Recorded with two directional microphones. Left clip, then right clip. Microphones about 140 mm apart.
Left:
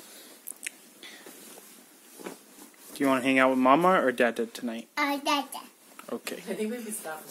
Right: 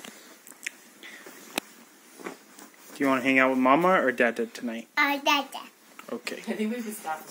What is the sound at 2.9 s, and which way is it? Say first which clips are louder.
Speech: right 1 dB; 5° left (ahead or behind).